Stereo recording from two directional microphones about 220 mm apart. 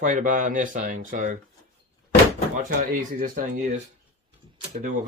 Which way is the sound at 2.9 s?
35° right (ahead or behind).